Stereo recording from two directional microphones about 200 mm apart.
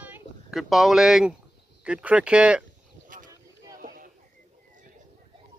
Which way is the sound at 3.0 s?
40° right (ahead or behind).